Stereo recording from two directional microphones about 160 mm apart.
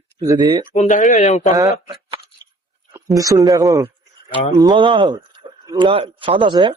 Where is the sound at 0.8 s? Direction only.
50° left (ahead or behind).